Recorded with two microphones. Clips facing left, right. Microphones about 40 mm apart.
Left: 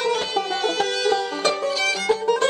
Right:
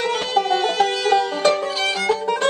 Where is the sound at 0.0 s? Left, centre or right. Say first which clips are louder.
Right 2 dB; centre.